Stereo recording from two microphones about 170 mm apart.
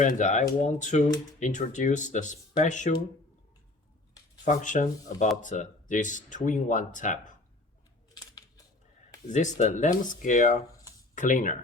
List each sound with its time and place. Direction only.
0.0 s speech: 45° left (ahead or behind)
4.4 s speech: 50° left (ahead or behind)
8.1 s scissors: 20° left (ahead or behind)
9.3 s speech: 45° left (ahead or behind)